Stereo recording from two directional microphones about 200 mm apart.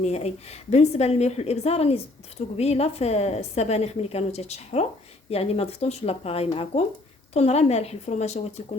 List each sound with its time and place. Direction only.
0.0 s a woman's voice: 30° left (ahead or behind)